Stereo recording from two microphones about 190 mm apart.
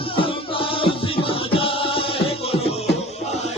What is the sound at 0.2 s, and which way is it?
Music, 30° left (ahead or behind).